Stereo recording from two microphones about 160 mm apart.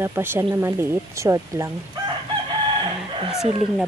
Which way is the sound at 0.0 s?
15° right (ahead or behind).